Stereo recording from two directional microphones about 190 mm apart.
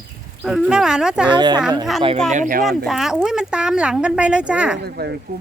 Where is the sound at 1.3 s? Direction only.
25° right (ahead or behind).